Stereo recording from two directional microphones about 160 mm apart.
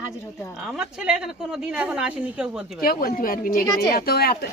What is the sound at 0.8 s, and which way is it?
A woman's voice, 5° right (ahead or behind).